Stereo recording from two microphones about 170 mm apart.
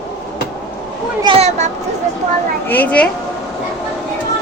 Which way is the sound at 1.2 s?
35° right (ahead or behind).